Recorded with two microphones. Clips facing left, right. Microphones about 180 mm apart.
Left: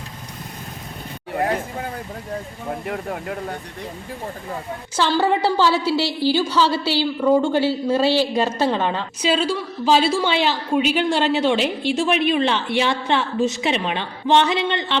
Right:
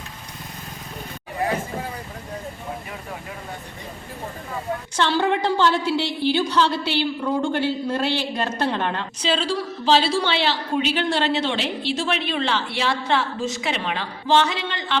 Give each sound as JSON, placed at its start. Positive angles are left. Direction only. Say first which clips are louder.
{"t": 2.8, "sound": "speech", "louder": "left 8 dB", "side_deg": 60}
{"t": 4.9, "sound": "a woman's voice", "louder": "left 2 dB", "side_deg": 5}